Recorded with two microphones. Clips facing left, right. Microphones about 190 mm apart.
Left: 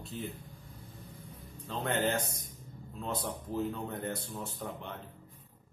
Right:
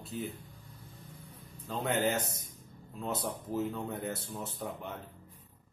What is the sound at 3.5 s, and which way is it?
Speech, 5° right (ahead or behind).